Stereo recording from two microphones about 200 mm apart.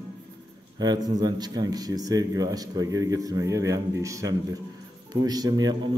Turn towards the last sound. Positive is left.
turn(degrees=-20)  # may be behind; listen again after turning